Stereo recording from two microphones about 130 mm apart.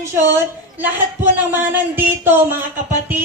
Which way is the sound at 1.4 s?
15° right (ahead or behind).